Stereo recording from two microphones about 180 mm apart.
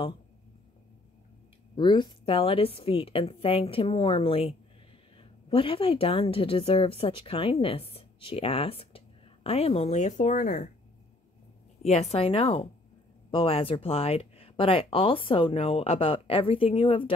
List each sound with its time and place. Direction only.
1.8 s speech: 25° left (ahead or behind); by 10.7 s 50° left (ahead or behind)
11.8 s speech: 35° left (ahead or behind)